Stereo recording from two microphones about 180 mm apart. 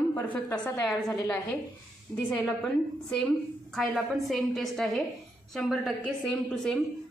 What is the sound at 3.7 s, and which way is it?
A woman's voice, centre (ahead or behind).